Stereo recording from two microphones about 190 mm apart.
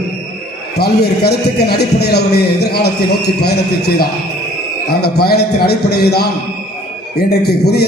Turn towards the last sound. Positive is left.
turn(degrees=60)  # may be behind; listen again after turning